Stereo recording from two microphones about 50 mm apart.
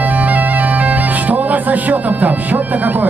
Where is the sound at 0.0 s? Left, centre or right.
Right.